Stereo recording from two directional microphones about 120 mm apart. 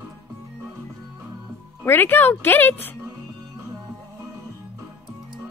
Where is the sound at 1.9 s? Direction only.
15° left (ahead or behind).